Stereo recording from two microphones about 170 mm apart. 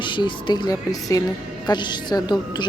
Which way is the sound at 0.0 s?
30° left (ahead or behind).